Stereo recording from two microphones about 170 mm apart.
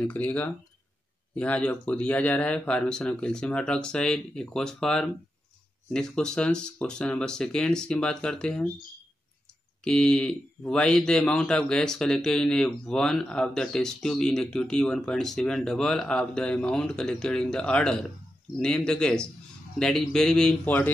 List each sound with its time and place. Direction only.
0.0 s a man's voice: 10° left (ahead or behind)
9.8 s a man's voice: 5° left (ahead or behind)